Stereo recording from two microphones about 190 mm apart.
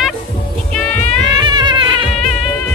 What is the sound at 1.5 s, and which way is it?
Cat, 25° right (ahead or behind).